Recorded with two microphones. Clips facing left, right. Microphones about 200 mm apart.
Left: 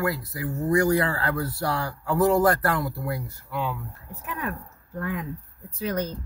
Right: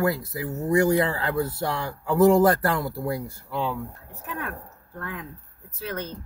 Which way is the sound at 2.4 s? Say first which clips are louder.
Right 2 dB; 25° right (ahead or behind).